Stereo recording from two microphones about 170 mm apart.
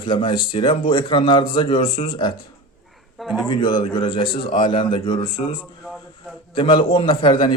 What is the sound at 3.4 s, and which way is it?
A man's voice, 25° left (ahead or behind).